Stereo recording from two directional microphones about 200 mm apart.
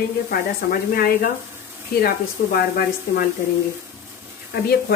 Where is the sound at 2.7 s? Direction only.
45° left (ahead or behind).